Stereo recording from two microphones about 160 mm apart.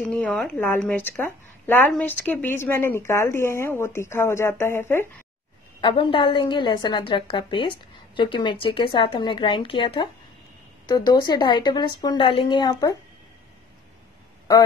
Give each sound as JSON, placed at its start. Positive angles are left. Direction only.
{"t": 0.0, "sound": "speech", "side_deg": 5}
{"t": 5.8, "sound": "a woman's voice", "side_deg": 30}